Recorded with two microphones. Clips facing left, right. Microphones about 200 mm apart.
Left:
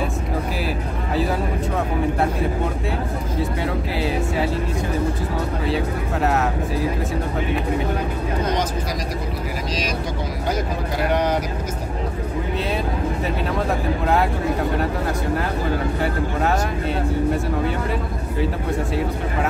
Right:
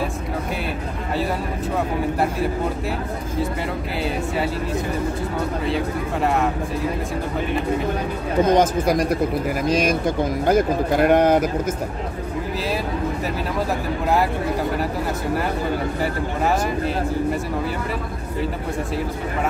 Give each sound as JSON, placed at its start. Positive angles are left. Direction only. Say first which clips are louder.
{"t": 6.2, "sound": "speech", "louder": "even", "side_deg": 0}
{"t": 8.5, "sound": "speech", "louder": "right 7 dB", "side_deg": -50}